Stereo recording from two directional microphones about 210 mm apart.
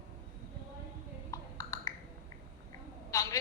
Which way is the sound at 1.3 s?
15° left (ahead or behind).